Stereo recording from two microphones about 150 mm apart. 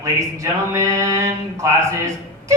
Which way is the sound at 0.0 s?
20° right (ahead or behind).